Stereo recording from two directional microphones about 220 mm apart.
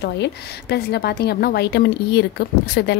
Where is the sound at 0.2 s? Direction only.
50° left (ahead or behind).